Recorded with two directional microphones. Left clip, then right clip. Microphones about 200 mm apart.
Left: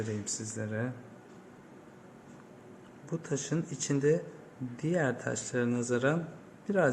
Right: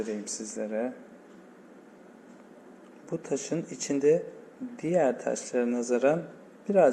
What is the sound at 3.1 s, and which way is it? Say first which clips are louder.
A man's voice: right 4 dB; 10° right (ahead or behind).